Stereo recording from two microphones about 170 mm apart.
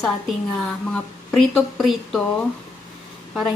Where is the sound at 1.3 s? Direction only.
Centre (ahead or behind).